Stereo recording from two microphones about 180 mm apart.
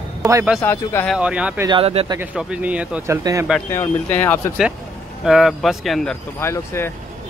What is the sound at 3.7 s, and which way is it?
Speech, 10° left (ahead or behind).